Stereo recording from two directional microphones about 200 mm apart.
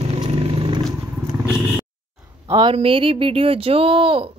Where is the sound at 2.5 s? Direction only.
25° right (ahead or behind).